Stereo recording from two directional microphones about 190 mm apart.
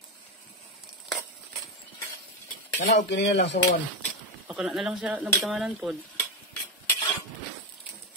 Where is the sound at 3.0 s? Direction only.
65° left (ahead or behind).